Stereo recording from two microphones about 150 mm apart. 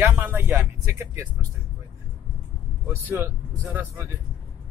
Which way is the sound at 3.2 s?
15° right (ahead or behind).